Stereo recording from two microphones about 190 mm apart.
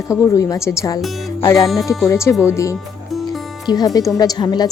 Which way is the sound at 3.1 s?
Centre (ahead or behind).